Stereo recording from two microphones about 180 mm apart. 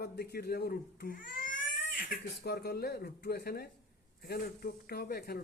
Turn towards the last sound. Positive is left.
turn(degrees=60)  # may be behind; listen again after turning